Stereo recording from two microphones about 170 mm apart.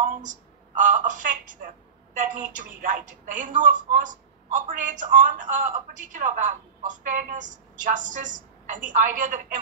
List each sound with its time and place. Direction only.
0.2 s a woman's voice: 50° right (ahead or behind)